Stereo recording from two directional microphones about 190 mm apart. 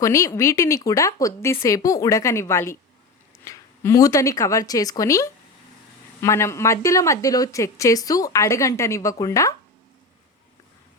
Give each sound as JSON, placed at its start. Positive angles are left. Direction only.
{"t": 0.0, "sound": "speech", "side_deg": 15}